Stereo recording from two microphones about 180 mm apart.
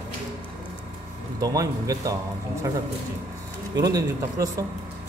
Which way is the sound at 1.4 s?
20° right (ahead or behind).